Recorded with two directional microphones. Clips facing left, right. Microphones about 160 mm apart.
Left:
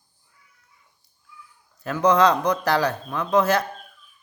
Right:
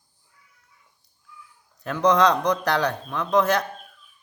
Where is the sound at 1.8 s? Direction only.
5° left (ahead or behind).